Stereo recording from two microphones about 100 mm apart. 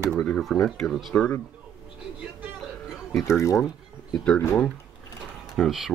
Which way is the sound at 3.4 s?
30° left (ahead or behind).